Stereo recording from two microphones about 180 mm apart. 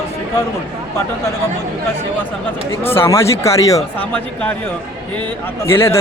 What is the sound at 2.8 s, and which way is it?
Speech, 15° left (ahead or behind).